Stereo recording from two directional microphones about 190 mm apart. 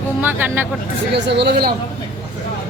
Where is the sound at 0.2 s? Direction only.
10° right (ahead or behind).